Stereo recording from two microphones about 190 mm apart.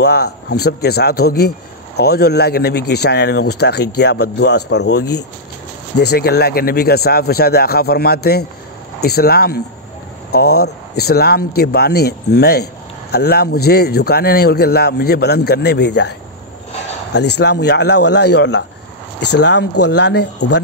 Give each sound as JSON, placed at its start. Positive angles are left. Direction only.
{"t": 0.0, "sound": "speech", "side_deg": 60}